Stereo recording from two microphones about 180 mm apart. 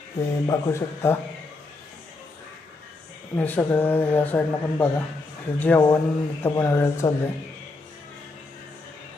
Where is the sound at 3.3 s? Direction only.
10° left (ahead or behind).